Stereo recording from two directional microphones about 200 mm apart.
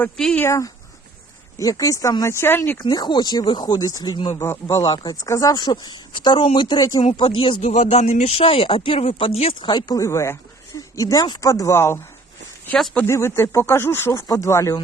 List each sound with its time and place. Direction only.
0.0 s speech: 5° left (ahead or behind)
7.0 s speech: 30° left (ahead or behind); by 14.8 s 15° left (ahead or behind)